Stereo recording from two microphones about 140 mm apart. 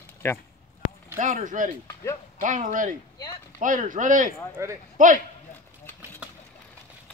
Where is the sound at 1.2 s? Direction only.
65° right (ahead or behind).